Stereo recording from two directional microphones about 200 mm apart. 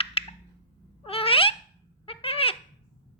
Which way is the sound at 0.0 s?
30° left (ahead or behind).